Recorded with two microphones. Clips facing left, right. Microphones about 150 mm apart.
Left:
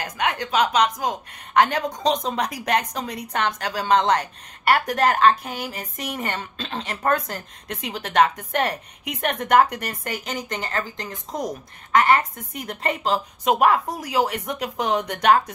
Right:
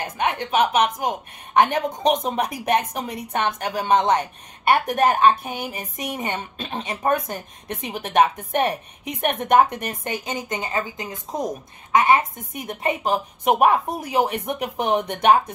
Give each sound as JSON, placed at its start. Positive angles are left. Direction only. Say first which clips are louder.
{"t": 0.0, "sound": "a woman's voice", "louder": "right 1 dB", "side_deg": -20}